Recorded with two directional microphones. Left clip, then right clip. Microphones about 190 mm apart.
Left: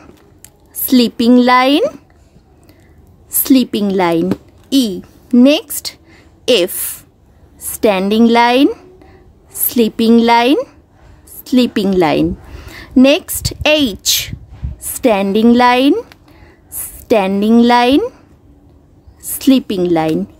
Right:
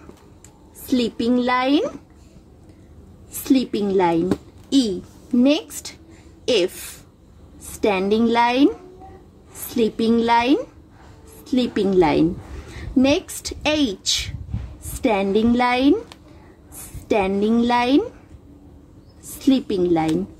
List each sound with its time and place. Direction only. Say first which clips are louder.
0.8 s a woman's voice: left 9 dB; 45° left (ahead or behind)
3.4 s a woman's voice: left 7 dB; 40° left (ahead or behind)
9.8 s a woman's voice: left 8 dB; 40° left (ahead or behind)
17.1 s a woman's voice: left 7 dB; 35° left (ahead or behind)
19.3 s a woman's voice: left 7 dB; 40° left (ahead or behind)